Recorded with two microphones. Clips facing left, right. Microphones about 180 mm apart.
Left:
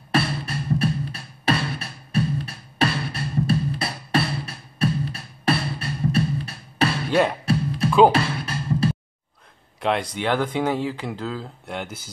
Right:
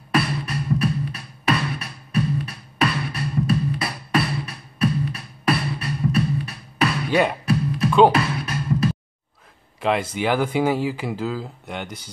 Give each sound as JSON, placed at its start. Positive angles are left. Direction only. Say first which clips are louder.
{"t": 0.1, "sound": "music", "louder": "right 1 dB", "side_deg": 30}
{"t": 7.1, "sound": "music", "louder": "even", "side_deg": -5}
{"t": 8.1, "sound": "music", "louder": "right 1 dB", "side_deg": 30}
{"t": 9.8, "sound": "speech", "louder": "right 2 dB", "side_deg": 0}